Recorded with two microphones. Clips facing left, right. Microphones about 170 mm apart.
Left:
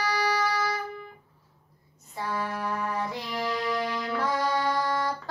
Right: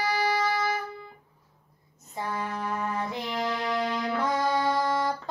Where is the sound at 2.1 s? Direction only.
20° right (ahead or behind).